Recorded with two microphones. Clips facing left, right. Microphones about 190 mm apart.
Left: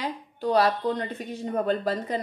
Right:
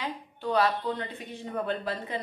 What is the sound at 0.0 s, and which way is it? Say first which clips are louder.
A woman's voice: left 4 dB; 40° left (ahead or behind).